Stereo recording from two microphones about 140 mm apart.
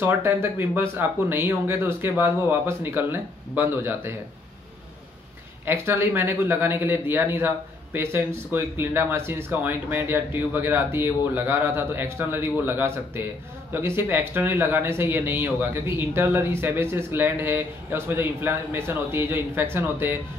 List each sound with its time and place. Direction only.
0.0 s speech: 15° right (ahead or behind)
5.7 s speech: 15° right (ahead or behind)